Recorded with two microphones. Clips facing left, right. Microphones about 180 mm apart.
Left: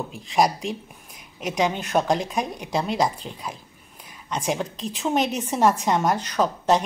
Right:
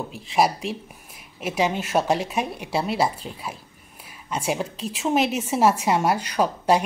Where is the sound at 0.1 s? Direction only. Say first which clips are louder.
Even; 5° right (ahead or behind).